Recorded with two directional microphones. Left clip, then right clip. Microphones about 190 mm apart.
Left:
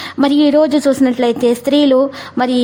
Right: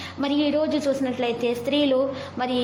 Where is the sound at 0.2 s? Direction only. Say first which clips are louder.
Left 12 dB; 45° left (ahead or behind).